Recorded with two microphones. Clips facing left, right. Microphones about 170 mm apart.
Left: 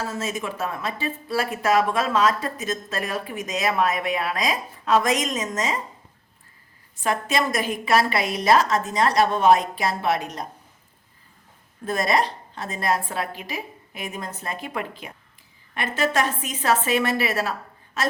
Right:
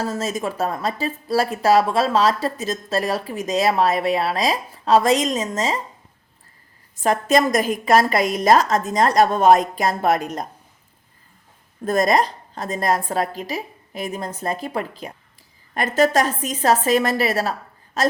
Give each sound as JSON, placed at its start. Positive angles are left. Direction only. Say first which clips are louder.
{"t": 0.0, "sound": "speech", "louder": "right 4 dB", "side_deg": -40}
{"t": 7.0, "sound": "a woman's voice", "louder": "right 6 dB", "side_deg": -40}
{"t": 11.9, "sound": "a woman's voice", "louder": "right 5 dB", "side_deg": -45}